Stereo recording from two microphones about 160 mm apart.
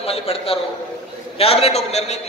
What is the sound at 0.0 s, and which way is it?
A man's voice, 35° left (ahead or behind).